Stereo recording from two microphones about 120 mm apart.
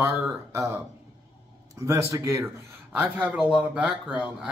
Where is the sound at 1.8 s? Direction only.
25° right (ahead or behind).